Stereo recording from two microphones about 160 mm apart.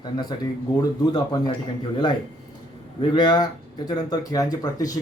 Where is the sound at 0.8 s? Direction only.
25° left (ahead or behind).